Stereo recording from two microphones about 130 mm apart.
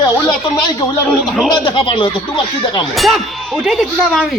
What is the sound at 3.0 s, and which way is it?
Speech, centre (ahead or behind).